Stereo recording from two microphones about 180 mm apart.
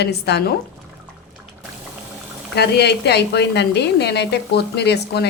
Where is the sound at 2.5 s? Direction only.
65° left (ahead or behind).